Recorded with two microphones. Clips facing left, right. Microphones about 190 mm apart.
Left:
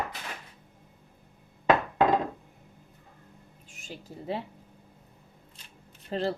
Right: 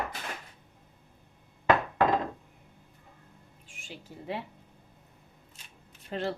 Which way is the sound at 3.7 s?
40° left (ahead or behind).